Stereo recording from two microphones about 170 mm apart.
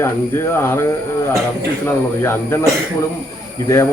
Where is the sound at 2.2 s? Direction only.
15° left (ahead or behind).